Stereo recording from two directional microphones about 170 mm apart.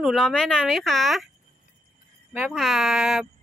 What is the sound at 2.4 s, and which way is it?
Speech, centre (ahead or behind).